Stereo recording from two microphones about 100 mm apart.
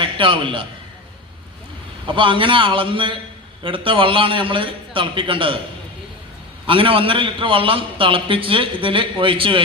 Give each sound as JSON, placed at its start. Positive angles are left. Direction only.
{"t": 0.0, "sound": "a man's voice", "side_deg": -60}
{"t": 2.0, "sound": "a man's voice", "side_deg": -60}
{"t": 6.7, "sound": "a man's voice", "side_deg": -60}